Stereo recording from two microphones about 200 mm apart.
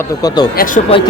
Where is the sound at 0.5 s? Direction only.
45° left (ahead or behind).